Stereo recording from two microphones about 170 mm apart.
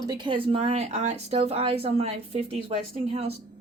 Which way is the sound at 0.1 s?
30° right (ahead or behind).